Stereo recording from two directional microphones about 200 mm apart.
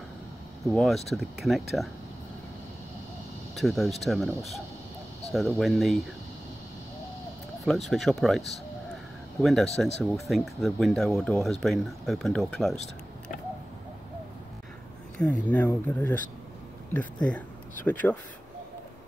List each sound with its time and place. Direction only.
0.7 s speech: centre (ahead or behind)
3.5 s speech: centre (ahead or behind)
7.9 s speech: centre (ahead or behind)
15.1 s speech: 5° left (ahead or behind)